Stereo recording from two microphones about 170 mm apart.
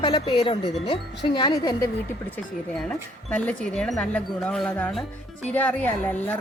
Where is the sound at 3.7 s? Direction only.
5° left (ahead or behind).